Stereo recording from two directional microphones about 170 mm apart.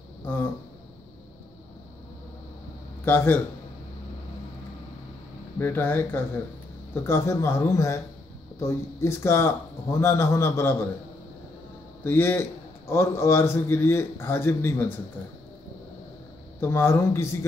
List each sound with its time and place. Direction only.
0.2 s speech: 10° left (ahead or behind)
3.1 s a man's voice: 10° left (ahead or behind)
5.6 s a man's voice: 10° left (ahead or behind)
12.0 s a man's voice: 15° left (ahead or behind)
16.5 s a man's voice: 15° left (ahead or behind)